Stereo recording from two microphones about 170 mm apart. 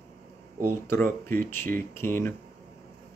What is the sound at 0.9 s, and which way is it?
Speech, 15° left (ahead or behind).